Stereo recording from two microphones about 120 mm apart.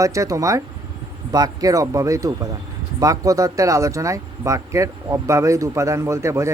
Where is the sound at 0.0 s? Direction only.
25° right (ahead or behind).